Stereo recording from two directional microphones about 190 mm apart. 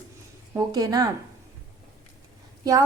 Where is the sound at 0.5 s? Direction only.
20° right (ahead or behind).